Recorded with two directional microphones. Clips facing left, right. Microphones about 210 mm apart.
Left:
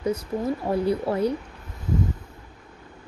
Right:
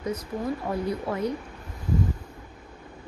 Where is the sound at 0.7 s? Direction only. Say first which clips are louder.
Left 5 dB; 30° left (ahead or behind).